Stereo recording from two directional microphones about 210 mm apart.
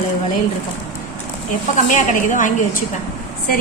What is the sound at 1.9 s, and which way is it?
Speech, 40° left (ahead or behind).